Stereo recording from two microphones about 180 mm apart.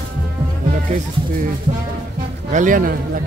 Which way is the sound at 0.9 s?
35° right (ahead or behind).